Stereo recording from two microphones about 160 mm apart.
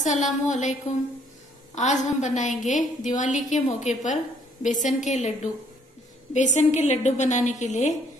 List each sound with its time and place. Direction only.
0.0 s a woman's voice: 50° left (ahead or behind)
1.8 s a woman's voice: 50° left (ahead or behind)